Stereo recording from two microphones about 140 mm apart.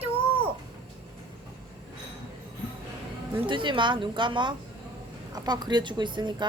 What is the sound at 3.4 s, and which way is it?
A woman's voice, 35° right (ahead or behind).